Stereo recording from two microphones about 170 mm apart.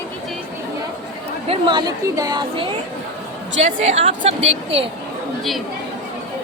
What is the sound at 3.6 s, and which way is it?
Speech, 45° right (ahead or behind).